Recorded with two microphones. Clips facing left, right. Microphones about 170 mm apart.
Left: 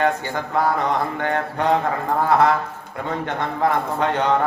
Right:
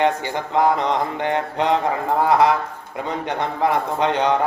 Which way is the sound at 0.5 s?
20° right (ahead or behind).